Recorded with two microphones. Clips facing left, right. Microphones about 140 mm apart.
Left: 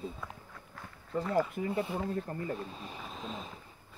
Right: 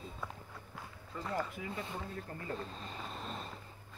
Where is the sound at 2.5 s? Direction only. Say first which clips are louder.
Left 2 dB; 10° left (ahead or behind).